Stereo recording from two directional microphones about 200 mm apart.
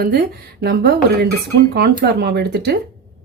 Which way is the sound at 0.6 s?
50° right (ahead or behind).